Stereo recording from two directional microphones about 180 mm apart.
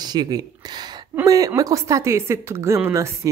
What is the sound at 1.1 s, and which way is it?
Speech, 20° right (ahead or behind).